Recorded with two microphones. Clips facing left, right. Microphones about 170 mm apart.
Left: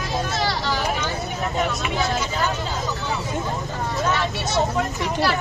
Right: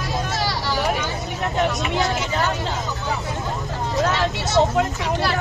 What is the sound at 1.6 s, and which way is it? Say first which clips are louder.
Vehicle: right 3 dB; centre (ahead or behind).